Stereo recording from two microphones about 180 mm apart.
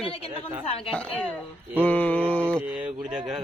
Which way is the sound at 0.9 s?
5° left (ahead or behind).